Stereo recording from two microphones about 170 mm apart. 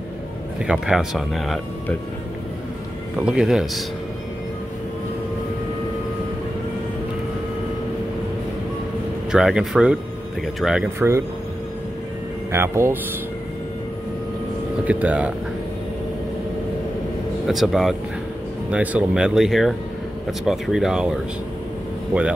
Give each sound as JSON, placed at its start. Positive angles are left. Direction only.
{"t": 0.6, "sound": "speech", "side_deg": -5}
{"t": 3.2, "sound": "speech", "side_deg": -5}
{"t": 9.3, "sound": "speech", "side_deg": -5}
{"t": 11.0, "sound": "speech", "side_deg": -15}
{"t": 12.5, "sound": "speech", "side_deg": -15}
{"t": 14.9, "sound": "speech", "side_deg": -10}
{"t": 17.5, "sound": "speech", "side_deg": 0}